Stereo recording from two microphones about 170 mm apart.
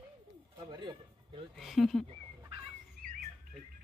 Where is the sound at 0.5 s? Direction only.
25° right (ahead or behind).